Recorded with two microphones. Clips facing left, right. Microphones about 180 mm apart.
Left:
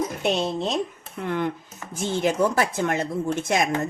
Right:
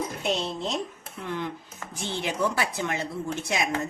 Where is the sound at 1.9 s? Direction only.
45° left (ahead or behind).